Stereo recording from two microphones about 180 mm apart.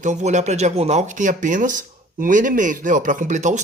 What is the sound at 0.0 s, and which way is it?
Speech, 40° right (ahead or behind).